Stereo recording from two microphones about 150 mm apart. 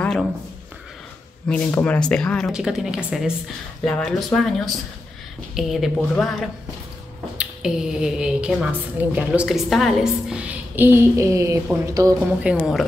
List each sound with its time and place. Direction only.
0.0 s a sound: 5° left (ahead or behind)
1.5 s a woman's voice: 10° left (ahead or behind)
3.8 s a woman's voice: 5° left (ahead or behind)
5.9 s a woman's voice: 10° left (ahead or behind)
7.3 s a woman's voice: 5° right (ahead or behind); by 12.2 s 20° right (ahead or behind)
12.4 s a woman's voice: 5° right (ahead or behind)